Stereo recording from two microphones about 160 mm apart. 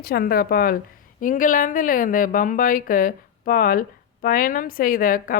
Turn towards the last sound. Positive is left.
turn(degrees=60)  # may be behind; listen again after turning